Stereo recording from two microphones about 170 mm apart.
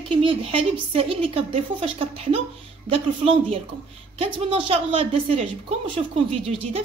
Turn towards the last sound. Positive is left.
turn(degrees=-35)  # may be behind; listen again after turning